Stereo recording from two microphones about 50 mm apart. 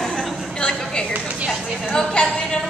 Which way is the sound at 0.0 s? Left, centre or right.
Centre.